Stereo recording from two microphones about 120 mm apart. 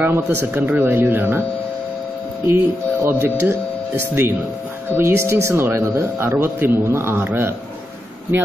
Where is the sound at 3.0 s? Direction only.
20° right (ahead or behind).